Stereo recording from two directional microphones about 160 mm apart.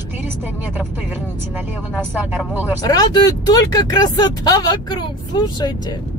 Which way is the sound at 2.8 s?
25° left (ahead or behind).